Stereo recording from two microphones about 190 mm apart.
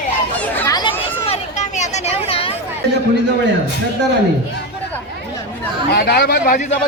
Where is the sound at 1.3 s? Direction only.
35° left (ahead or behind).